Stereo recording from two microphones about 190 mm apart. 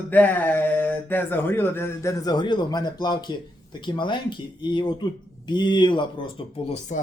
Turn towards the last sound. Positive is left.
turn(degrees=35)  # may be behind; listen again after turning